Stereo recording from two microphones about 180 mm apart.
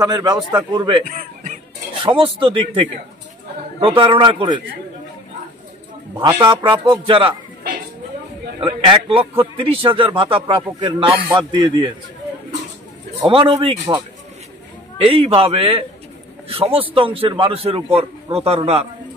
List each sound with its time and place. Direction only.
0.0 s a man's voice: 20° right (ahead or behind)
1.0 s speech: 45° right (ahead or behind)
2.0 s a man's voice: 30° right (ahead or behind)
6.4 s a man's voice: 25° right (ahead or behind)
8.5 s a man's voice: 25° right (ahead or behind)
13.3 s a man's voice: 30° right (ahead or behind)
15.0 s a man's voice: 30° right (ahead or behind)